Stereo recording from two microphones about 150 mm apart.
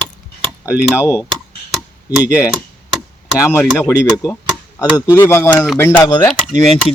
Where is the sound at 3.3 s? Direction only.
20° left (ahead or behind).